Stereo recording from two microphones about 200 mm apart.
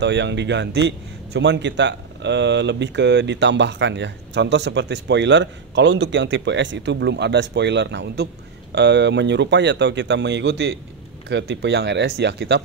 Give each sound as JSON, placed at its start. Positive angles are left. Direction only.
{"t": 0.0, "sound": "a man's voice", "side_deg": -60}